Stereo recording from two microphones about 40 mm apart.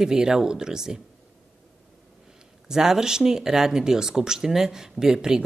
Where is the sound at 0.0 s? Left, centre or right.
Centre.